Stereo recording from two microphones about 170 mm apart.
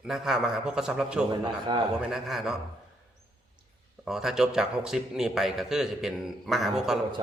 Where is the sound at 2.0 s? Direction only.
Centre (ahead or behind).